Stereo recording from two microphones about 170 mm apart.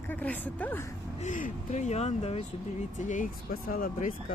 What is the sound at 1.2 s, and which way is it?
Speech, 45° left (ahead or behind).